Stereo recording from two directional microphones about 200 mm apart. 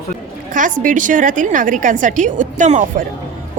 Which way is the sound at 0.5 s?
40° right (ahead or behind).